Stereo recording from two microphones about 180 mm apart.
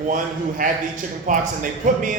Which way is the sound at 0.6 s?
45° right (ahead or behind).